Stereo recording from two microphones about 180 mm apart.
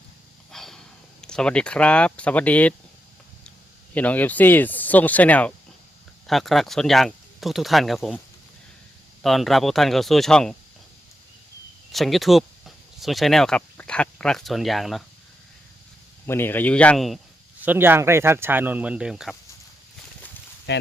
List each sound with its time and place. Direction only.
0.5 s snort: centre (ahead or behind)
1.2 s speech: 5° left (ahead or behind)
3.9 s speech: 10° left (ahead or behind)
9.2 s speech: centre (ahead or behind)
11.9 s speech: centre (ahead or behind)
16.2 s speech: 15° left (ahead or behind)
17.6 s speech: 10° right (ahead or behind)
20.7 s speech: 70° left (ahead or behind)